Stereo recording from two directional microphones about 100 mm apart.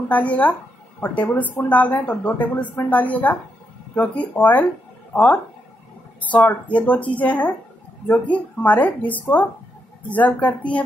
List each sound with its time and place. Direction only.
0.1 s speech: 15° left (ahead or behind)